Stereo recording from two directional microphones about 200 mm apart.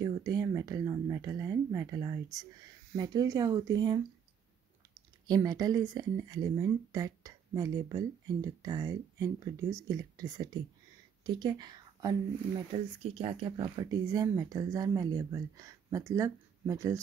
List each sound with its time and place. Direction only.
0.0 s speech: 20° right (ahead or behind)
5.3 s speech: 20° right (ahead or behind)